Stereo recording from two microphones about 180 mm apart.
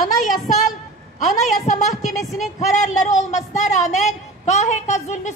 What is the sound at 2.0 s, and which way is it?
Speech, centre (ahead or behind).